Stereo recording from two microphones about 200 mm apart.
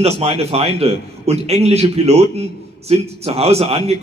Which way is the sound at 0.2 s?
30° right (ahead or behind).